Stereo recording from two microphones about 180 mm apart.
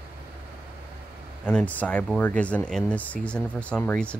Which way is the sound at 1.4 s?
5° left (ahead or behind).